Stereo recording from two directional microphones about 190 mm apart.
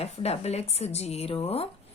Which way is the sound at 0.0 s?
35° left (ahead or behind).